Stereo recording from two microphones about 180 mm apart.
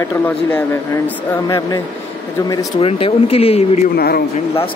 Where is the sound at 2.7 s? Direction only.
30° left (ahead or behind).